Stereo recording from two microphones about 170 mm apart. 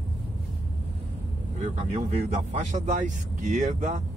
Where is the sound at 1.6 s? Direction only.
45° right (ahead or behind).